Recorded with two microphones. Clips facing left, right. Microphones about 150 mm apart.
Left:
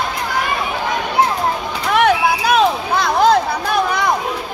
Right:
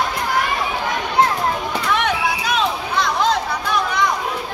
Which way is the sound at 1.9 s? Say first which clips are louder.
Left 7 dB; 40° left (ahead or behind).